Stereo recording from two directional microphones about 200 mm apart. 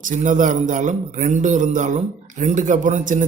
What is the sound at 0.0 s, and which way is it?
A man's voice, 40° right (ahead or behind).